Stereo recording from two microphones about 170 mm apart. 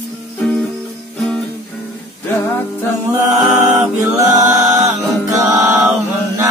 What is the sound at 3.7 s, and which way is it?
Music, 20° right (ahead or behind).